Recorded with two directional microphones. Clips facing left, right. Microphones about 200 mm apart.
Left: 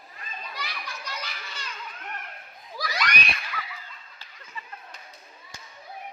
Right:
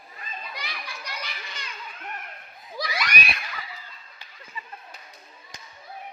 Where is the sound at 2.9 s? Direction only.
5° right (ahead or behind).